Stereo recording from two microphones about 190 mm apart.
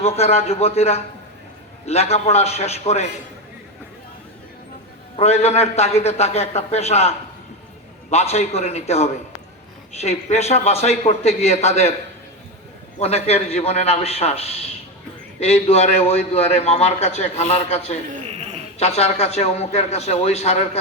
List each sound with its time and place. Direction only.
0.0 s a man's voice: 35° left (ahead or behind)
5.1 s a man's voice: 35° left (ahead or behind)
8.1 s a man's voice: 35° left (ahead or behind)
13.0 s a man's voice: 35° left (ahead or behind)
18.1 s a sound: 30° right (ahead or behind)
18.8 s a man's voice: 35° left (ahead or behind)